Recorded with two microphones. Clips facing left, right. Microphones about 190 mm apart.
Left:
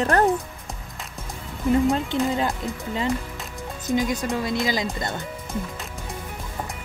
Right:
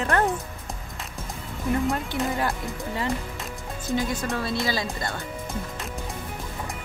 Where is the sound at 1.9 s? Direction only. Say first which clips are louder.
Left 4 dB; 20° left (ahead or behind).